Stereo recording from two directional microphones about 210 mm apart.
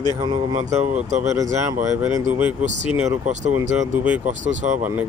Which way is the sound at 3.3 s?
35° right (ahead or behind).